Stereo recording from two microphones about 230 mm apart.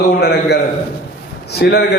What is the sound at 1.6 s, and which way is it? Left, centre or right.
Speech, left.